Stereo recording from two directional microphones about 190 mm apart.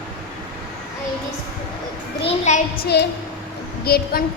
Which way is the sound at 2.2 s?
35° left (ahead or behind).